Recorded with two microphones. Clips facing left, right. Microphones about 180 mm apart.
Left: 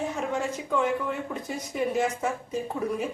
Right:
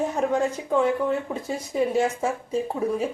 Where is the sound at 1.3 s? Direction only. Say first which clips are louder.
Right 4 dB; 30° right (ahead or behind).